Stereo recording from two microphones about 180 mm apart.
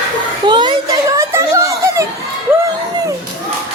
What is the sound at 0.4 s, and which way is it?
Children playing, 25° right (ahead or behind).